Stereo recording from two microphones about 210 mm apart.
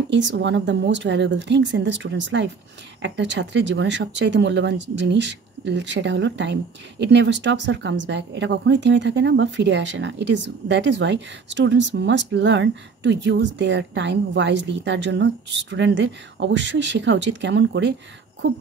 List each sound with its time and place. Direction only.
0.1 s speech: 55° right (ahead or behind)